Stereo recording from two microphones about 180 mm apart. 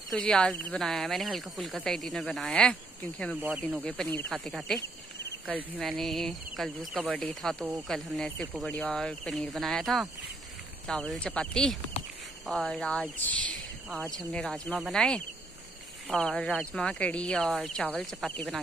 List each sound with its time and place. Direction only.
0.1 s speech: 5° left (ahead or behind)
3.3 s speech: 10° right (ahead or behind)
3.8 s speech: 5° left (ahead or behind)
4.8 s cricket: 65° left (ahead or behind)
5.8 s speech: centre (ahead or behind)